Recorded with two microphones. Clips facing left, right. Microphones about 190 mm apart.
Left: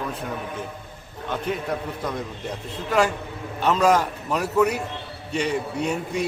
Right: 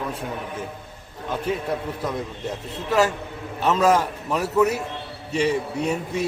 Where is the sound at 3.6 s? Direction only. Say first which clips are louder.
Even; centre (ahead or behind).